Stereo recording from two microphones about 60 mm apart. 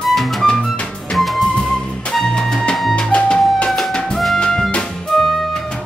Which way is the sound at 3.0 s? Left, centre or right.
Centre.